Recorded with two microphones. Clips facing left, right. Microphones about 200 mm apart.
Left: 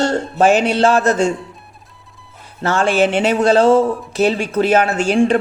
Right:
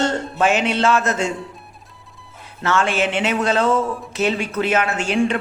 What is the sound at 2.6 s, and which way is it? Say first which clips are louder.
A woman's voice: left 5 dB; 35° left (ahead or behind).